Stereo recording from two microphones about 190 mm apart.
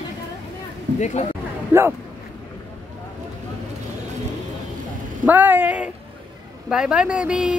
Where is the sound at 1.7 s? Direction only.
10° right (ahead or behind).